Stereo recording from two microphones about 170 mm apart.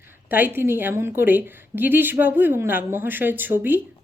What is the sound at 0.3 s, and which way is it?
A woman's voice, 10° right (ahead or behind).